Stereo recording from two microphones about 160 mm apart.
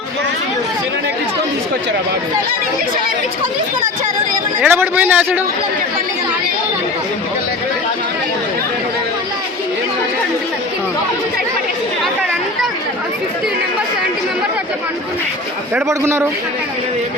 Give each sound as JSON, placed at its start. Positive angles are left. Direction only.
{"t": 4.6, "sound": "speech", "side_deg": -10}
{"t": 15.7, "sound": "speech", "side_deg": -15}